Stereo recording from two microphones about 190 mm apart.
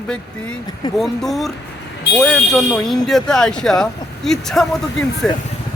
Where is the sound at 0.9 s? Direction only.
Centre (ahead or behind).